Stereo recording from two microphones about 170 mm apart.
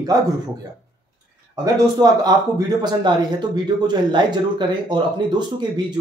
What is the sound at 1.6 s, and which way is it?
Speech, 20° right (ahead or behind).